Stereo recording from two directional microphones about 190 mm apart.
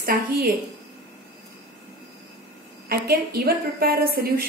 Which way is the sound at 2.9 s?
55° right (ahead or behind).